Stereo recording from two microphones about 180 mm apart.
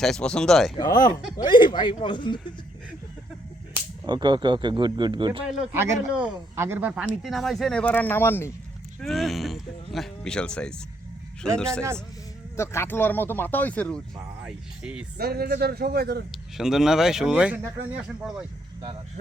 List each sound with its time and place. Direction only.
0.0 s speech: 5° left (ahead or behind)
0.8 s speech: 20° left (ahead or behind)
4.0 s speech: 25° right (ahead or behind)
6.2 s speech: 10° right (ahead or behind); by 8.5 s 15° left (ahead or behind)
9.0 s speech: centre (ahead or behind)
12.5 s speech: 15° left (ahead or behind)
14.4 s speech: 5° right (ahead or behind)
15.2 s speech: 60° right (ahead or behind)
16.3 s speech: centre (ahead or behind)